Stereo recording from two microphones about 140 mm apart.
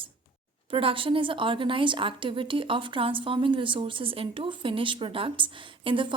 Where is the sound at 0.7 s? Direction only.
40° right (ahead or behind).